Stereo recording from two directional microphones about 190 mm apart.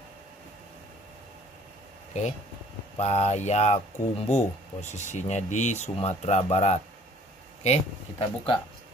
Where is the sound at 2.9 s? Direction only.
35° left (ahead or behind).